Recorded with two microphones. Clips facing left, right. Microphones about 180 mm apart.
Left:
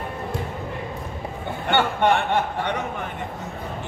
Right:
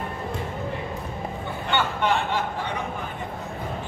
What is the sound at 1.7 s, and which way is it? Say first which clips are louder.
Speech: left 4 dB; 60° left (ahead or behind).